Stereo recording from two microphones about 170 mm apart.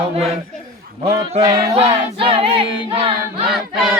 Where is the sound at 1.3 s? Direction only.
35° right (ahead or behind).